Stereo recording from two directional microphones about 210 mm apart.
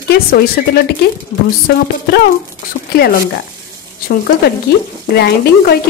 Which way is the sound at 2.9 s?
45° left (ahead or behind).